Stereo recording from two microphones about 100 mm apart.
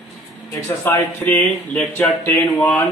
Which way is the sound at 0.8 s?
20° left (ahead or behind).